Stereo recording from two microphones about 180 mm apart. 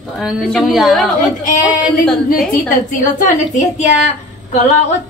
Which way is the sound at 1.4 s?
45° left (ahead or behind).